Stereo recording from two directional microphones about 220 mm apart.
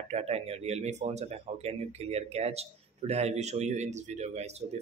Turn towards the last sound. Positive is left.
turn(degrees=-30)  # may be behind; listen again after turning